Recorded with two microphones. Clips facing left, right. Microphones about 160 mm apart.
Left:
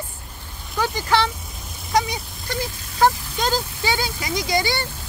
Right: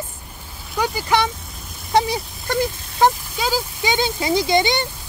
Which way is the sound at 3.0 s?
20° right (ahead or behind).